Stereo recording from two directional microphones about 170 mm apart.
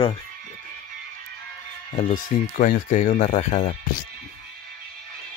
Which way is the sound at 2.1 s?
55° left (ahead or behind).